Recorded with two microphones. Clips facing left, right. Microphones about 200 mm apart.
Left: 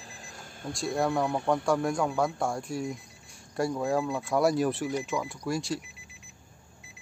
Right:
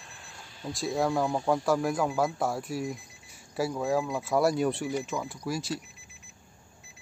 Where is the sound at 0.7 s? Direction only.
Centre (ahead or behind).